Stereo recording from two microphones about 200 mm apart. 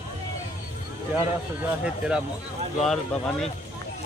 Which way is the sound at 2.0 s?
5° right (ahead or behind).